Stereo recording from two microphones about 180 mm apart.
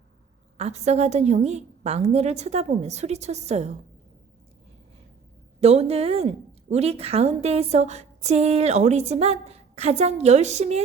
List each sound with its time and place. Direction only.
0.5 s a woman's voice: 35° right (ahead or behind)
5.5 s a woman's voice: 35° right (ahead or behind)